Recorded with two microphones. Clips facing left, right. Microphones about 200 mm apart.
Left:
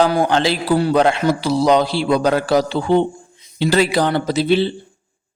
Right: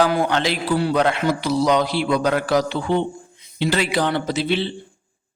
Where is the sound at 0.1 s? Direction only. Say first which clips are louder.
Left 4 dB; 35° left (ahead or behind).